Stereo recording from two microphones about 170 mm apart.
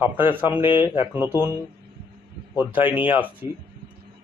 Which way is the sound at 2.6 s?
10° right (ahead or behind).